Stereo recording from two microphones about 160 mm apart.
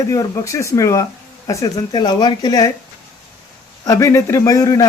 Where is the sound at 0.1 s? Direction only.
20° left (ahead or behind).